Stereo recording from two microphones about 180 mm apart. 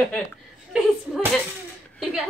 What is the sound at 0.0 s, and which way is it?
Speech, 10° left (ahead or behind).